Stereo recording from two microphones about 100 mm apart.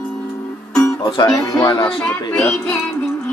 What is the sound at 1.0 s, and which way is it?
Speech, 45° left (ahead or behind).